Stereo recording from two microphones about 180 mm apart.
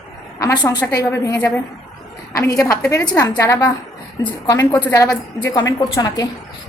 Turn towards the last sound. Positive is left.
turn(degrees=20)  # may be behind; listen again after turning